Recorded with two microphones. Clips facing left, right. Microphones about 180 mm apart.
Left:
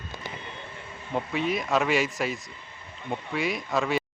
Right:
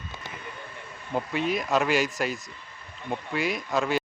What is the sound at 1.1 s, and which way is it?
Speech, centre (ahead or behind).